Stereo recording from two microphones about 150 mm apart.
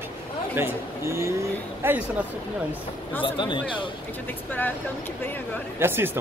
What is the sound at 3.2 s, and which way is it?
Speech, 35° left (ahead or behind).